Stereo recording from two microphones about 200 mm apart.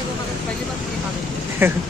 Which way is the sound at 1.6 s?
10° right (ahead or behind).